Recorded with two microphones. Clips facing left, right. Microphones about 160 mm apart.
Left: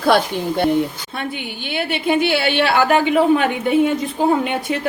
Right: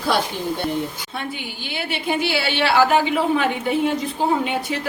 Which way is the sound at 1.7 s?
55° left (ahead or behind).